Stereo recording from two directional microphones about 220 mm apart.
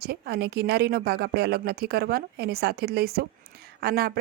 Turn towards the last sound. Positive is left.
turn(degrees=-45)  # may be behind; listen again after turning